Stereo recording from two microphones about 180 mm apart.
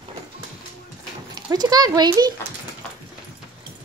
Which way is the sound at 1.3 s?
20° right (ahead or behind).